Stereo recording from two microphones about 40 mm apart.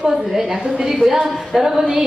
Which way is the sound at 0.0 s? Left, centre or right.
Centre.